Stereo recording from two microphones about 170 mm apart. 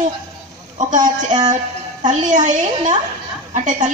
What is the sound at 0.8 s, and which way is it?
A woman's voice, 50° right (ahead or behind).